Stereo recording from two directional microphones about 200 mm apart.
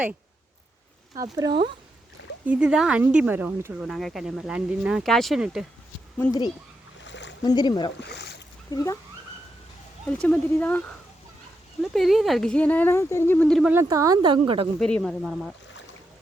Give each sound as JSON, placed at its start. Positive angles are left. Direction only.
{"t": 1.1, "sound": "speech", "side_deg": -20}
{"t": 2.5, "sound": "speech", "side_deg": -5}
{"t": 6.1, "sound": "speech", "side_deg": 15}
{"t": 7.0, "sound": "rowboat", "side_deg": 65}
{"t": 7.4, "sound": "speech", "side_deg": 20}
{"t": 8.0, "sound": "speech", "side_deg": 55}
{"t": 8.7, "sound": "speech", "side_deg": 15}
{"t": 10.1, "sound": "speech", "side_deg": 5}
{"t": 13.7, "sound": "speech", "side_deg": -15}
{"t": 14.8, "sound": "speech", "side_deg": 5}